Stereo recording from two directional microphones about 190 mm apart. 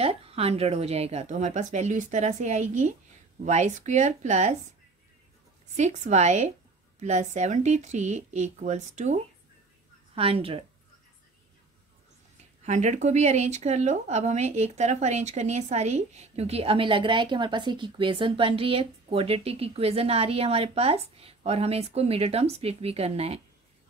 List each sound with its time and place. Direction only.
0.0 s speech: 30° right (ahead or behind)
5.8 s speech: 40° right (ahead or behind)
12.6 s speech: 40° right (ahead or behind)